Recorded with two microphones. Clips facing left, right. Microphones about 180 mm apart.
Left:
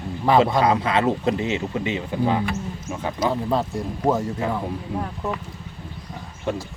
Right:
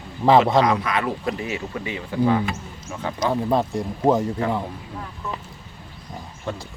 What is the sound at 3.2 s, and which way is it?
Speech, 15° right (ahead or behind).